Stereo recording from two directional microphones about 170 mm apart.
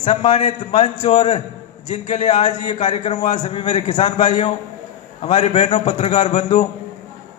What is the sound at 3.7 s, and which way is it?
A man's voice, 45° left (ahead or behind).